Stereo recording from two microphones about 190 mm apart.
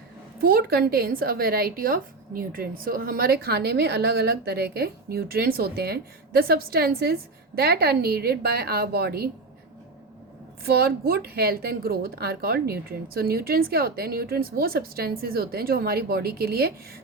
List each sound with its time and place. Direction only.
0.4 s a woman's voice: 50° right (ahead or behind)
10.7 s a woman's voice: 55° right (ahead or behind)